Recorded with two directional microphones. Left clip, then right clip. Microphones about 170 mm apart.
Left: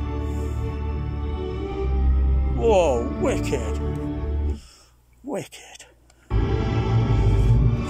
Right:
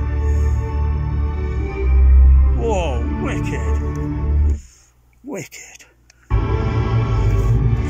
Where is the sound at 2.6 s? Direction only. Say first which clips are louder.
Left 3 dB; 15° left (ahead or behind).